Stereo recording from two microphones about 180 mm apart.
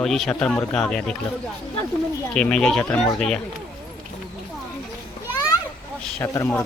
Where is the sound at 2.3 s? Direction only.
5° left (ahead or behind).